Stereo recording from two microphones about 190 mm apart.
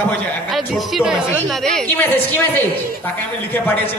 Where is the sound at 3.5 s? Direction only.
10° left (ahead or behind).